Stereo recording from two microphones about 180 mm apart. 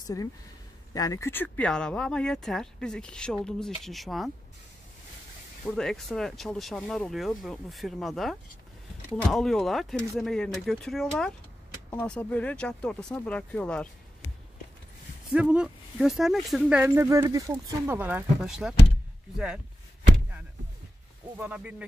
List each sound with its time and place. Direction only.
0.0 s speech: 20° left (ahead or behind); by 4.3 s centre (ahead or behind)
5.7 s speech: 5° left (ahead or behind)
15.3 s speech: 5° right (ahead or behind)
16.8 s speech: 15° right (ahead or behind)
21.4 s speech: 10° right (ahead or behind)